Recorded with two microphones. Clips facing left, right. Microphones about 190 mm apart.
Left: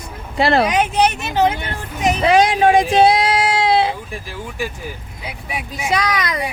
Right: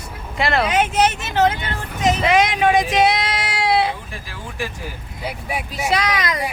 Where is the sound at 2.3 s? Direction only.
35° left (ahead or behind).